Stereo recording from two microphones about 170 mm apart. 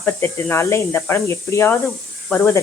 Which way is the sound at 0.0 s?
15° left (ahead or behind).